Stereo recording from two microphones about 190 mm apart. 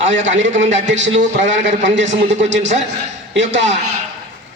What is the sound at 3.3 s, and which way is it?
Speech, 70° right (ahead or behind).